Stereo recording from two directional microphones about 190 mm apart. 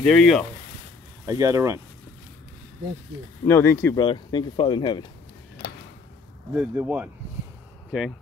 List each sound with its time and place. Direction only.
0.0 s speech: 5° left (ahead or behind)
1.2 s speech: 15° right (ahead or behind)
3.4 s speech: 10° left (ahead or behind)
4.0 s speech: 25° left (ahead or behind)
6.5 s speech: 10° right (ahead or behind)